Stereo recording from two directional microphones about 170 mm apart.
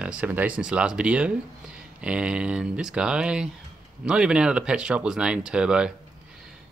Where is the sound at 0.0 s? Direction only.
10° right (ahead or behind).